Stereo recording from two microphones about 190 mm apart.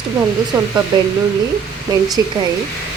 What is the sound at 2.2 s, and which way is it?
Speech, 15° right (ahead or behind).